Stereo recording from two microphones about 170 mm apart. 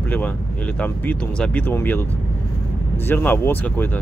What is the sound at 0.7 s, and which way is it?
Speech, 10° left (ahead or behind).